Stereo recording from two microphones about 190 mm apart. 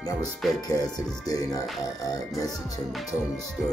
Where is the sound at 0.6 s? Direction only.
20° left (ahead or behind).